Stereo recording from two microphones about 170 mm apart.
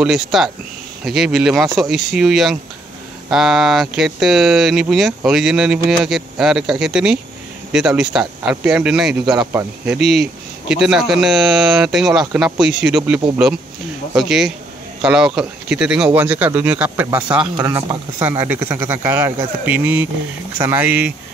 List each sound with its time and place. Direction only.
0.0 s speech: centre (ahead or behind)